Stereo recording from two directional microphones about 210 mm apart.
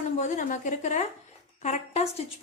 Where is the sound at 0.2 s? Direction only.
35° left (ahead or behind).